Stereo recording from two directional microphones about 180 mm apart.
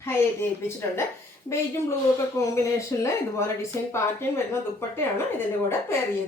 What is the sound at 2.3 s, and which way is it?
Speech, 15° left (ahead or behind).